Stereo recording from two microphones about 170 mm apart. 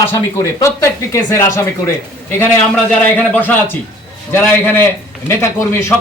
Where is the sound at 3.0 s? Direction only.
10° left (ahead or behind).